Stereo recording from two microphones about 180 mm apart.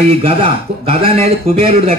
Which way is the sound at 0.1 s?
30° right (ahead or behind).